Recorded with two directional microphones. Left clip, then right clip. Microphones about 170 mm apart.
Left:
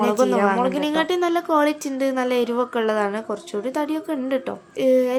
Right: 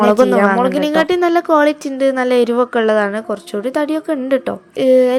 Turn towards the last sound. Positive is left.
turn(degrees=-30)  # may be behind; listen again after turning